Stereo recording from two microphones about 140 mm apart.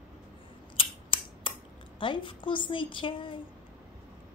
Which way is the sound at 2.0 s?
35° left (ahead or behind).